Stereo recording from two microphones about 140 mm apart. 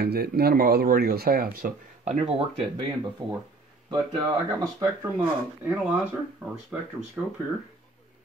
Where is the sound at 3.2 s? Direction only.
30° right (ahead or behind).